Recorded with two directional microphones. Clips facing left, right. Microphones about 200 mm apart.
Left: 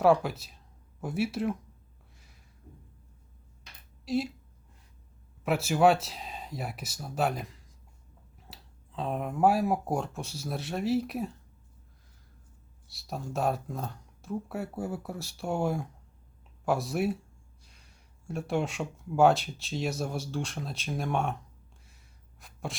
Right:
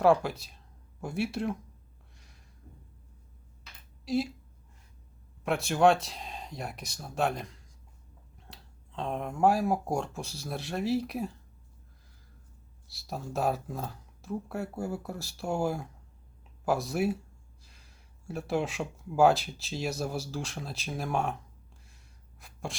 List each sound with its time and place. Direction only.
0.0 s speech: centre (ahead or behind)
2.1 s a sound: centre (ahead or behind)
4.0 s speech: centre (ahead or behind)
5.5 s speech: 5° left (ahead or behind)
12.9 s speech: centre (ahead or behind)
21.8 s sneeze: centre (ahead or behind)